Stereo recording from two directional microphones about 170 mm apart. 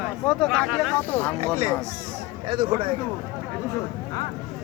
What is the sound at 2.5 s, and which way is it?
Speech, 30° right (ahead or behind).